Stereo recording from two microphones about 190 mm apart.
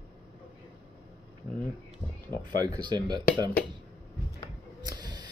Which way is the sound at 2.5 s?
20° right (ahead or behind).